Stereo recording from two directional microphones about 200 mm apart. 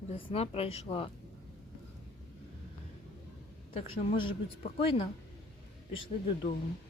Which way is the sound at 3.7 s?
25° left (ahead or behind).